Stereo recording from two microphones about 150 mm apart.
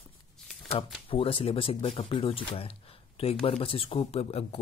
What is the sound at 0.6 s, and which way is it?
Speech, 40° left (ahead or behind).